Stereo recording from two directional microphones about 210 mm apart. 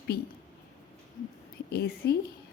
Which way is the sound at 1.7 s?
50° left (ahead or behind).